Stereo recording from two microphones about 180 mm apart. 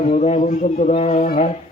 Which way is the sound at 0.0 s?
40° left (ahead or behind).